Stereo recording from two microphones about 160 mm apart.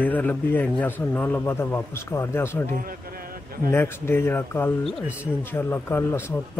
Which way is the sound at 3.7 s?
15° left (ahead or behind).